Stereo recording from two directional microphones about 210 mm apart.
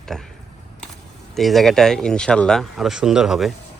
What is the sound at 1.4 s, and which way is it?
Speech, centre (ahead or behind).